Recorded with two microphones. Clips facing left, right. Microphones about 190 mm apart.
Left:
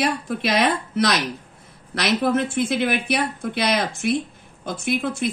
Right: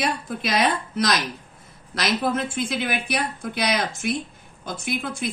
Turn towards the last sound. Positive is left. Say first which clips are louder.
# left 5 dB
turn(degrees=55)  # may be behind; listen again after turning